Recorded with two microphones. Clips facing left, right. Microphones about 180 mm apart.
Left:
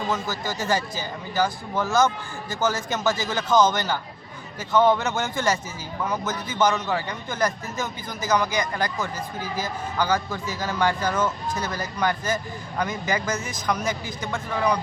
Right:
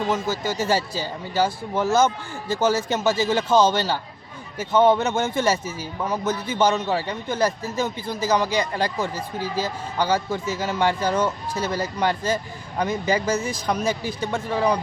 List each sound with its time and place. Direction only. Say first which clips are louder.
0.1 s a man's voice: right 3 dB; 25° right (ahead or behind)